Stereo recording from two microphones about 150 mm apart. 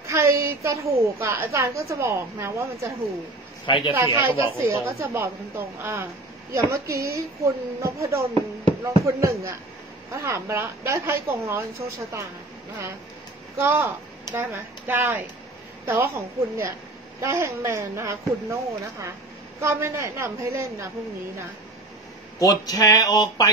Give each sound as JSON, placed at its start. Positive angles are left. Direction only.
{"t": 0.0, "sound": "a woman's voice", "side_deg": -20}
{"t": 3.6, "sound": "speech", "side_deg": 35}
{"t": 3.9, "sound": "a woman's voice", "side_deg": -20}
{"t": 13.6, "sound": "a woman's voice", "side_deg": -15}
{"t": 22.4, "sound": "speech", "side_deg": 25}